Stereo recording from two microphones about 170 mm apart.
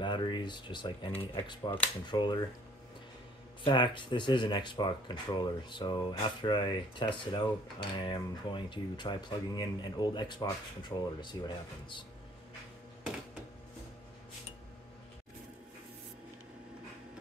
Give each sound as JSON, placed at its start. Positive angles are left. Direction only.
{"t": 0.0, "sound": "a sound", "side_deg": 25}
{"t": 1.3, "sound": "speech", "side_deg": 25}
{"t": 3.6, "sound": "speech", "side_deg": 25}